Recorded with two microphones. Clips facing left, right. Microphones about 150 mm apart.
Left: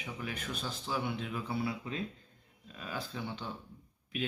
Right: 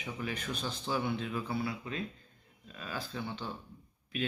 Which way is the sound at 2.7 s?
15° left (ahead or behind).